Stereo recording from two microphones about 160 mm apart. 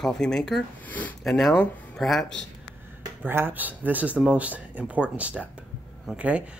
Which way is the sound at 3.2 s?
10° right (ahead or behind).